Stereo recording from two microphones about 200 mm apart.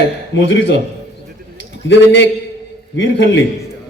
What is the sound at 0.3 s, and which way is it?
Speech, 65° left (ahead or behind).